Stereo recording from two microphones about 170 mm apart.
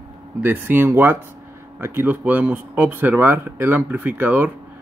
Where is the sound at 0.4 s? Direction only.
10° right (ahead or behind).